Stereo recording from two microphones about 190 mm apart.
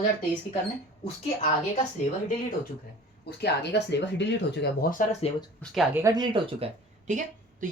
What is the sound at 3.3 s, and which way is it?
Speech, 60° left (ahead or behind).